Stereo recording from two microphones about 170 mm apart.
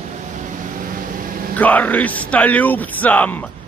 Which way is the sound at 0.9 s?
55° right (ahead or behind).